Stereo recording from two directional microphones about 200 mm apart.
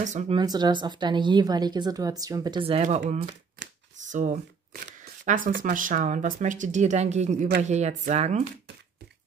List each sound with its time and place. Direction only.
0.0 s speech: 35° right (ahead or behind)
0.4 s a woman's voice: 20° right (ahead or behind)
4.1 s speech: 40° right (ahead or behind)